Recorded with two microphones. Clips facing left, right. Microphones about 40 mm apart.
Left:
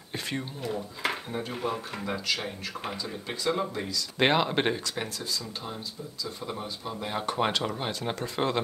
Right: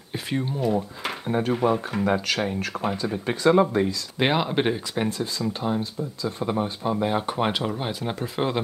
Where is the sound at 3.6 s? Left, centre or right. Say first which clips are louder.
Right 10 dB; right.